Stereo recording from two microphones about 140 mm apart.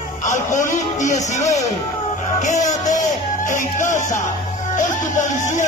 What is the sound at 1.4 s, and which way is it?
Speech, 25° left (ahead or behind).